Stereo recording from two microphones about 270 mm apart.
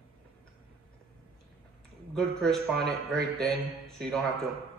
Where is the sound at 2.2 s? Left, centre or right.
Centre.